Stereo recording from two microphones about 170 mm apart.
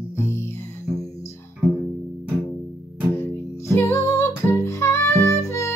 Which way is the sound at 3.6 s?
15° left (ahead or behind).